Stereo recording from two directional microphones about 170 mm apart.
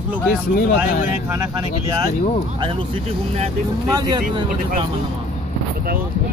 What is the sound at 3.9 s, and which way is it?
Speech, 25° right (ahead or behind).